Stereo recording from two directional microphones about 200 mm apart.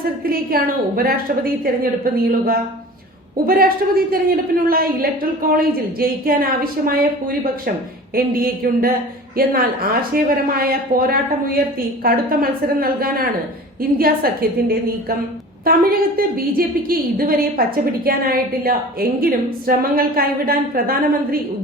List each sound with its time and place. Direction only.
0.3 s a woman's voice: 50° right (ahead or behind)
8.1 s a woman's voice: 45° right (ahead or behind)
15.6 s a woman's voice: 45° right (ahead or behind)